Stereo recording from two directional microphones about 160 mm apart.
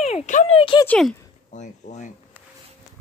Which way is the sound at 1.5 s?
50° left (ahead or behind).